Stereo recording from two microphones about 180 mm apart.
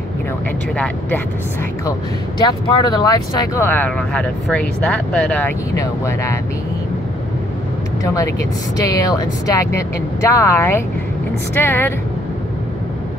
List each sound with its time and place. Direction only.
2.8 s speech: 25° left (ahead or behind)
8.0 s speech: 20° left (ahead or behind)